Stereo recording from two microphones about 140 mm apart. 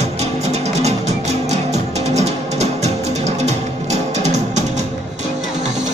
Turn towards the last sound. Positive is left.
turn(degrees=-50)  # may be behind; listen again after turning